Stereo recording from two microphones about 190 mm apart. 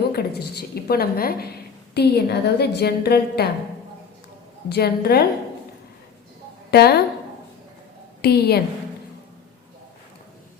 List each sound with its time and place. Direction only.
0.1 s a woman's voice: 55° left (ahead or behind)
4.7 s a woman's voice: 55° left (ahead or behind)
6.7 s a woman's voice: 55° left (ahead or behind)
8.2 s a woman's voice: 55° left (ahead or behind)